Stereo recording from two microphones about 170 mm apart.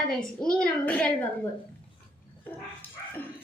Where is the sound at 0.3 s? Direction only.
5° left (ahead or behind).